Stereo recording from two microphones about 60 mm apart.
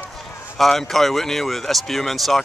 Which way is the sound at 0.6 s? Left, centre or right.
Centre.